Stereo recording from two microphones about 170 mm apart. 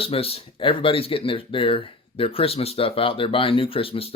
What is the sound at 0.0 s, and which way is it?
Speech, 35° left (ahead or behind).